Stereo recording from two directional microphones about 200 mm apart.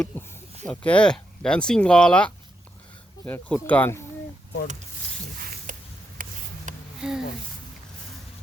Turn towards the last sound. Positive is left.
turn(degrees=-5)  # may be behind; listen again after turning